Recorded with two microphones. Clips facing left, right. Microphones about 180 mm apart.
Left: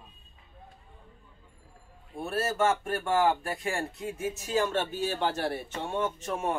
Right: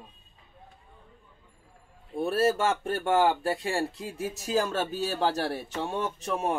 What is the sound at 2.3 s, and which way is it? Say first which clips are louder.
Speech: right 2 dB; 30° right (ahead or behind).